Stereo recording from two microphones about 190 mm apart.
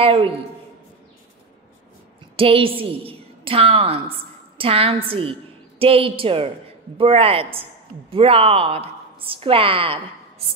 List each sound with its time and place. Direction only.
0.0 s a woman's voice: 25° right (ahead or behind)
2.3 s a woman's voice: 30° right (ahead or behind)